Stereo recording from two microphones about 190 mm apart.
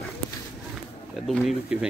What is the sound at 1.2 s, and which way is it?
Speech, centre (ahead or behind).